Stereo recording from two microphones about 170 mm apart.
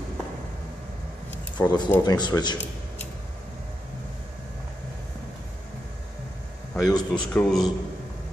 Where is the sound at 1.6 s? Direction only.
15° left (ahead or behind).